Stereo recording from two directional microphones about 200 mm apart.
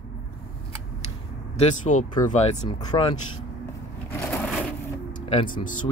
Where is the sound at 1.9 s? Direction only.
40° left (ahead or behind).